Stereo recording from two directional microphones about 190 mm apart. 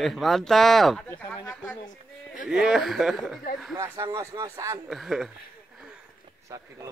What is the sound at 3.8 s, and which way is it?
Speech, 20° right (ahead or behind).